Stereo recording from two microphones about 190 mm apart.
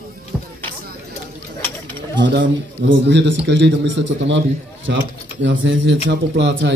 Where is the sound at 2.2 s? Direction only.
70° right (ahead or behind).